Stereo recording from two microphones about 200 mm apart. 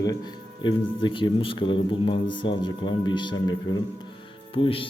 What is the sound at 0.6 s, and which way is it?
Speech, 25° left (ahead or behind).